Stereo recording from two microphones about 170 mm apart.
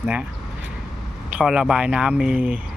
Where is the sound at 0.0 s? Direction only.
10° right (ahead or behind).